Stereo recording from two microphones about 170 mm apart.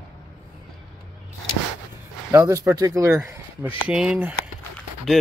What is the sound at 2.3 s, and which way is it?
Speech, 15° right (ahead or behind).